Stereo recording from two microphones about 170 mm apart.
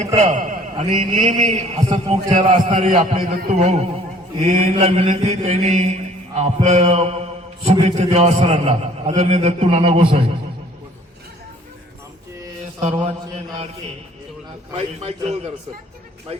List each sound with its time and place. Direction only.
0.2 s a man's voice: 45° right (ahead or behind)
4.4 s mantra: 45° right (ahead or behind)
12.8 s a sound: 40° right (ahead or behind)
14.7 s mantra: 35° right (ahead or behind)